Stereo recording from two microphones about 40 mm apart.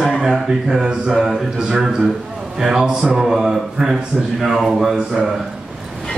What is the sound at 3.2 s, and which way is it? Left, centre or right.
A man's voice, centre.